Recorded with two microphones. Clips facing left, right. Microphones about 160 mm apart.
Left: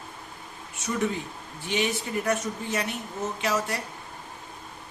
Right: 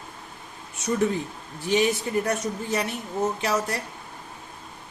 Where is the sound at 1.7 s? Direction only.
40° right (ahead or behind).